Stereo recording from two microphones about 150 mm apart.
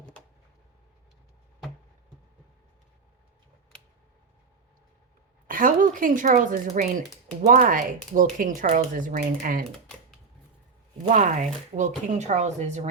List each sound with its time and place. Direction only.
5.5 s speech: 65° right (ahead or behind)
11.1 s speech: 55° right (ahead or behind)